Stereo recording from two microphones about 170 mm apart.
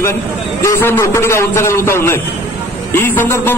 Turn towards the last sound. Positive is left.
turn(degrees=10)  # may be behind; listen again after turning